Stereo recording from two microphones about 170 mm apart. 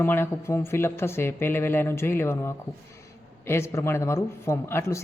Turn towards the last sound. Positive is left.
turn(degrees=15)  # may be behind; listen again after turning